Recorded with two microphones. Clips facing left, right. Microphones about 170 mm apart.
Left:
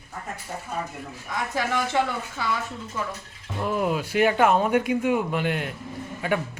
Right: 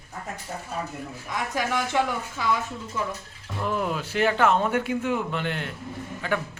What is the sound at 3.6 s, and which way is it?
A man's voice, 10° left (ahead or behind).